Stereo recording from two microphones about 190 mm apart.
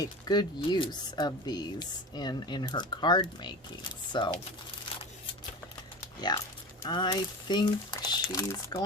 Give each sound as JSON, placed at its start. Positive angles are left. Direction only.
{"t": 0.0, "sound": "speech", "side_deg": 20}
{"t": 6.3, "sound": "speech", "side_deg": 20}